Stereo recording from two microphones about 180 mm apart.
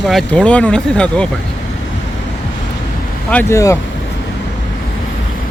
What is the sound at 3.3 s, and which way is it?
Speech, 15° left (ahead or behind).